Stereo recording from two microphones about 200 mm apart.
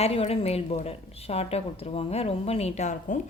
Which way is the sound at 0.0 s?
30° left (ahead or behind).